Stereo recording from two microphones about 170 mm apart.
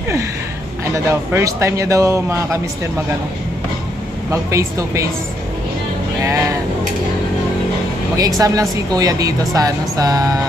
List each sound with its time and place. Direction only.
0.9 s a man's voice: 15° right (ahead or behind)
4.3 s a man's voice: 20° right (ahead or behind)
6.2 s speech: 20° right (ahead or behind)
8.4 s speech: 20° right (ahead or behind)